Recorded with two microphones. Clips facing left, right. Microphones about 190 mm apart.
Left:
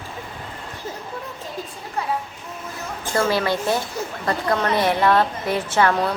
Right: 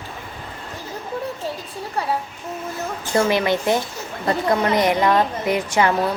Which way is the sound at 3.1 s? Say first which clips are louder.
Right 2 dB; 20° right (ahead or behind).